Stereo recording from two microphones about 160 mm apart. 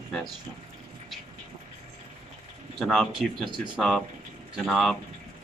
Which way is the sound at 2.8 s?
5° left (ahead or behind).